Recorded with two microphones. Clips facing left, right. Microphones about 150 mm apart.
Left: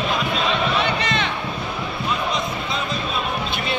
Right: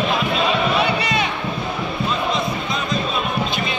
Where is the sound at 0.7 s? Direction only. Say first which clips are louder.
Right 2 dB; 10° right (ahead or behind).